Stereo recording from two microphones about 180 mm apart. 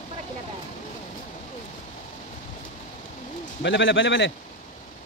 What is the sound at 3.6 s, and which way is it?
Speech, 90° left.